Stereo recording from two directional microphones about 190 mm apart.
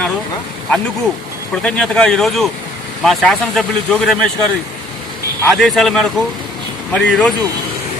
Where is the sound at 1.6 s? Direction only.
5° left (ahead or behind).